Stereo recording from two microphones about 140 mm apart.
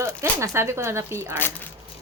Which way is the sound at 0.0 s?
20° right (ahead or behind).